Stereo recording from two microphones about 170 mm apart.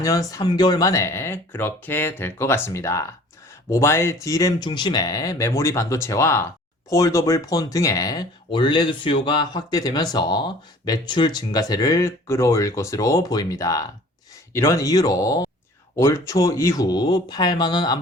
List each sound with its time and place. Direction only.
0.0 s speech: 20° left (ahead or behind)